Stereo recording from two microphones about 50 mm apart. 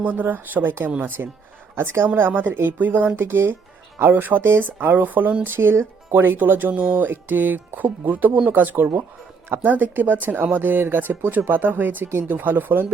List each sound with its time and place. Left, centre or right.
0.0 s speech: right
1.7 s a woman's voice: right
2.1 s speech: right
3.2 s speech: right
4.1 s speech: right
5.4 s speech: right